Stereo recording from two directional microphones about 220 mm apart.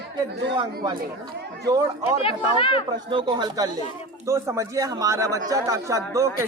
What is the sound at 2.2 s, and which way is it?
Speech, 25° left (ahead or behind).